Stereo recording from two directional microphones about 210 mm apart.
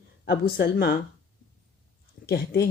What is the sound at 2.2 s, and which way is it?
Speech, 50° left (ahead or behind).